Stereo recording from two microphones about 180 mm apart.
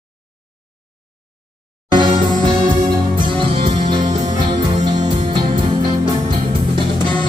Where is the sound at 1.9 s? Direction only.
25° right (ahead or behind).